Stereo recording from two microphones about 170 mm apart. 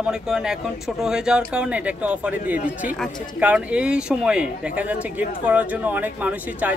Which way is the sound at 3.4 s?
5° right (ahead or behind).